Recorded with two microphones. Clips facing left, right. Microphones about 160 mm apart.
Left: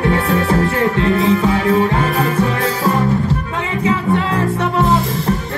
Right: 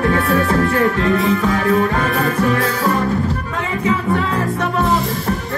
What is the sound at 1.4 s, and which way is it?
Music, 20° left (ahead or behind).